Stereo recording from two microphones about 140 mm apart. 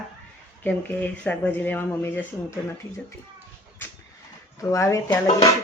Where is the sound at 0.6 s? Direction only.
10° left (ahead or behind).